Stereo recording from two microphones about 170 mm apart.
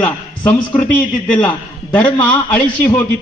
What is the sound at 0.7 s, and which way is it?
A man's voice, 10° left (ahead or behind).